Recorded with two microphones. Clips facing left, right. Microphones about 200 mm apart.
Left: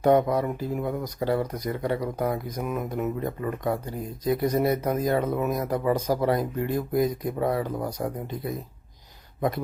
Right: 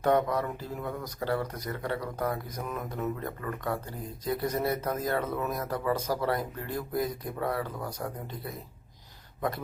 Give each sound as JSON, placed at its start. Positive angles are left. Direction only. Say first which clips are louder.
{"t": 0.0, "sound": "speech", "louder": "left 5 dB", "side_deg": 15}